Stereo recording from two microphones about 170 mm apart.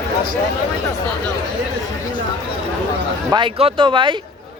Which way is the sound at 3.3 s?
30° right (ahead or behind).